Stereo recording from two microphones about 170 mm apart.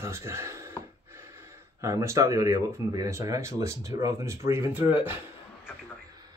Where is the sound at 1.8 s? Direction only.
15° right (ahead or behind).